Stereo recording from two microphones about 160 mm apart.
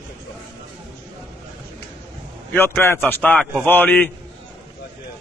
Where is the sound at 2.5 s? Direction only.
15° left (ahead or behind).